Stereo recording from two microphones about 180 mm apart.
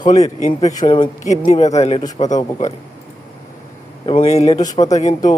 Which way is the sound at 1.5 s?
40° left (ahead or behind).